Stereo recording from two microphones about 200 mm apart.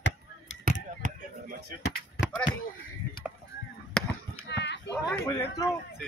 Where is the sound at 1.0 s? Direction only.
40° right (ahead or behind).